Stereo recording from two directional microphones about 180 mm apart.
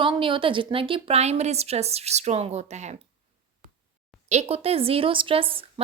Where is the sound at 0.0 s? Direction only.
30° right (ahead or behind).